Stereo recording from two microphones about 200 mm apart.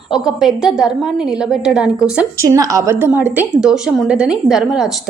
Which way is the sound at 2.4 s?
15° right (ahead or behind).